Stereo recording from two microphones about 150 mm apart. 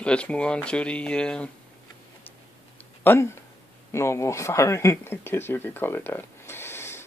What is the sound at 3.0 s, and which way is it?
Speech, 15° left (ahead or behind).